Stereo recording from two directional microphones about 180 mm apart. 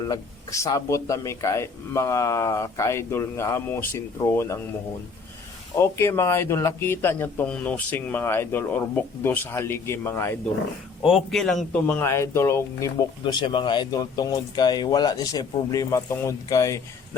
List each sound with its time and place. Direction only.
0.0 s a man's voice: 20° left (ahead or behind)
5.7 s a man's voice: 15° left (ahead or behind)
11.0 s a man's voice: centre (ahead or behind); by 13.1 s 15° left (ahead or behind)
13.2 s speech: 25° left (ahead or behind)